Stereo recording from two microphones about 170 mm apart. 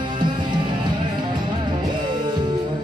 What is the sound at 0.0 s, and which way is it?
Music, 25° right (ahead or behind).